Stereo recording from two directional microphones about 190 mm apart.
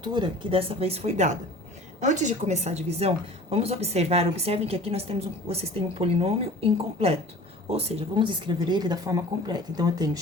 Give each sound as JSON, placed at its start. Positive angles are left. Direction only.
{"t": 0.0, "sound": "a woman's voice", "side_deg": -25}